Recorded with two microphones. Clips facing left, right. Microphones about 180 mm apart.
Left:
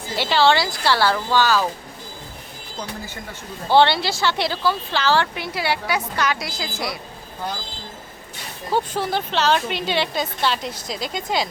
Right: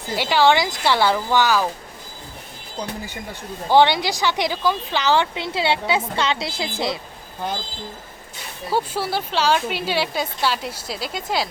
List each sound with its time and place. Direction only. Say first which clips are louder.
0.2 s speech: right 1 dB; 15° right (ahead or behind)
3.7 s speech: even; 15° right (ahead or behind)
8.7 s speech: left 1 dB; 10° right (ahead or behind)